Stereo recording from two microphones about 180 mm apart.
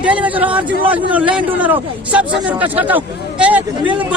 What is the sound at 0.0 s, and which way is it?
Speech, 5° right (ahead or behind).